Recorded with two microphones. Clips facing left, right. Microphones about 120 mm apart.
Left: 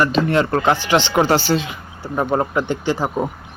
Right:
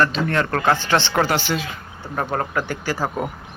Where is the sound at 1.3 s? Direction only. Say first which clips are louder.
Left 5 dB; 30° left (ahead or behind).